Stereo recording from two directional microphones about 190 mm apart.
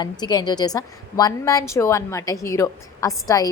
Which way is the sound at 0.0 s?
20° left (ahead or behind).